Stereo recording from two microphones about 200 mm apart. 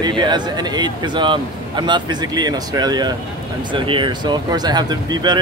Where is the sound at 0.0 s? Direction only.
20° right (ahead or behind).